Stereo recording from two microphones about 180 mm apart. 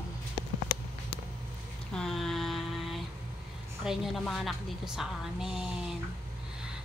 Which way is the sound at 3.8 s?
Centre (ahead or behind).